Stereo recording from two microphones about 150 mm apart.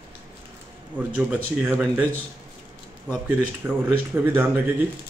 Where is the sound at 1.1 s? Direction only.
10° right (ahead or behind).